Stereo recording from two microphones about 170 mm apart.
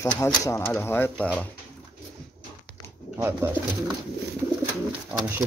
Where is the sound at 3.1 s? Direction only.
15° right (ahead or behind).